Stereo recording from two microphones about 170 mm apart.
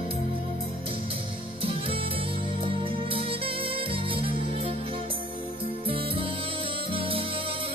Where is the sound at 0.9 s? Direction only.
35° right (ahead or behind).